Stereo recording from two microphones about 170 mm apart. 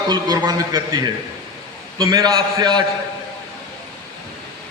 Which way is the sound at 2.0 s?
20° right (ahead or behind).